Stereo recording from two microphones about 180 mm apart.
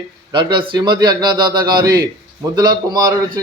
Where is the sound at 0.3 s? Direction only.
25° right (ahead or behind).